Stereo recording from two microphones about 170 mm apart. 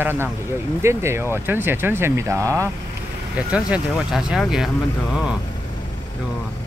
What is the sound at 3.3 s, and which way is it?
Speech, 5° right (ahead or behind).